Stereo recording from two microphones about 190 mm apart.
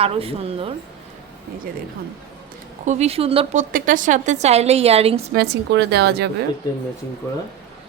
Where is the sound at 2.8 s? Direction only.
35° right (ahead or behind).